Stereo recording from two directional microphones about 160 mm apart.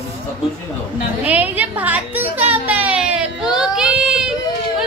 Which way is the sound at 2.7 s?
10° right (ahead or behind).